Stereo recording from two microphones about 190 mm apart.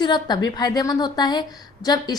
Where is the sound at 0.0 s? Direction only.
25° left (ahead or behind).